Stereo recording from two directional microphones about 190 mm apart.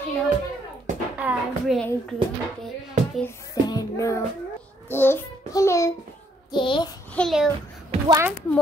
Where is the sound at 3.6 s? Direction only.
20° left (ahead or behind).